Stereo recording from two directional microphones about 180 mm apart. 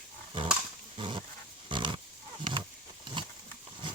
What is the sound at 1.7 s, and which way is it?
Pig, 25° right (ahead or behind).